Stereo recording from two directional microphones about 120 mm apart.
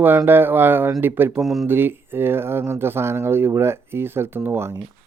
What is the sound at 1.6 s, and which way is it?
Speech, 20° right (ahead or behind).